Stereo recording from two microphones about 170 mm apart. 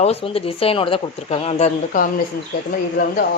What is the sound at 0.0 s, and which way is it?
A woman's voice, 35° left (ahead or behind).